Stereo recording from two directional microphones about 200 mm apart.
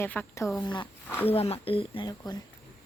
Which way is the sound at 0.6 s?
25° left (ahead or behind).